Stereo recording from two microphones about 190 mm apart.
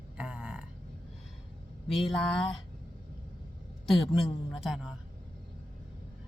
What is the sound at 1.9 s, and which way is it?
Speech, centre (ahead or behind).